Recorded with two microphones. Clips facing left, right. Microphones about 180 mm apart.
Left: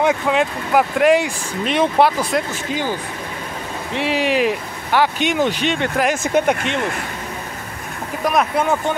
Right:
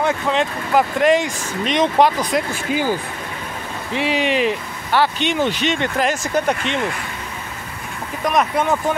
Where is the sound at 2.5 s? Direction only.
10° right (ahead or behind).